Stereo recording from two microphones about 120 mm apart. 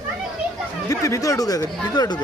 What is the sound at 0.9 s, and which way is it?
Speech, 30° left (ahead or behind).